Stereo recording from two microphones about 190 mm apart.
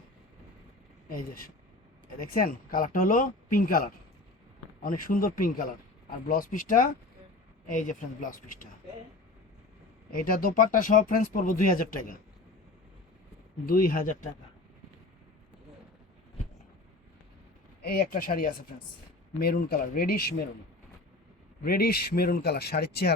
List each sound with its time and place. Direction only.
1.0 s speech: 50° left (ahead or behind)
10.1 s speech: 50° left (ahead or behind)
13.7 s speech: 45° left (ahead or behind)
17.8 s speech: 50° left (ahead or behind)
21.6 s speech: 50° left (ahead or behind)